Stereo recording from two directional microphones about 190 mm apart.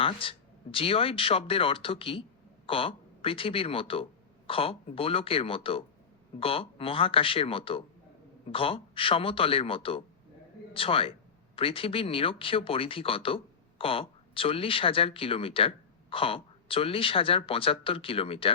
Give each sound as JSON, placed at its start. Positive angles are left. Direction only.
{"t": 0.0, "sound": "speech", "side_deg": 30}